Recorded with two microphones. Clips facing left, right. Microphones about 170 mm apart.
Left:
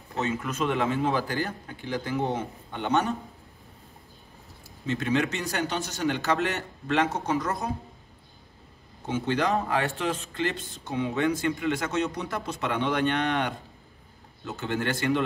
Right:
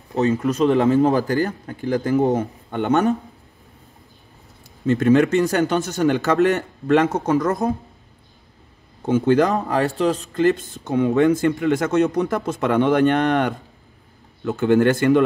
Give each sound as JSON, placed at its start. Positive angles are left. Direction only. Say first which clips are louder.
{"t": 0.1, "sound": "a man's voice", "louder": "right 10 dB", "side_deg": -35}
{"t": 4.8, "sound": "a man's voice", "louder": "right 11 dB", "side_deg": -50}
{"t": 9.0, "sound": "a man's voice", "louder": "right 10 dB", "side_deg": -45}